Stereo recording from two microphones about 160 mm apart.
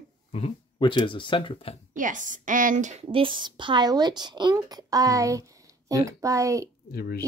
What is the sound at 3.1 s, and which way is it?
Speech, 30° right (ahead or behind).